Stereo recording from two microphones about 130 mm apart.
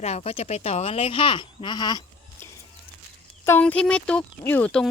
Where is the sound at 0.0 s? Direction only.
55° left (ahead or behind); by 2.0 s 30° left (ahead or behind).